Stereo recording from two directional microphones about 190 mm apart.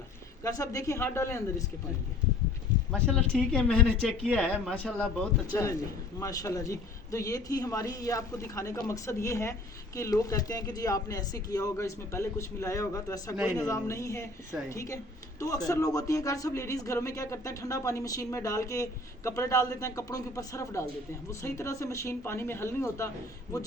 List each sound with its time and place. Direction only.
0.4 s speech: 15° left (ahead or behind)
2.9 s speech: 5° left (ahead or behind)
13.3 s a man's voice: 5° right (ahead or behind)
13.6 s speech: 15° left (ahead or behind)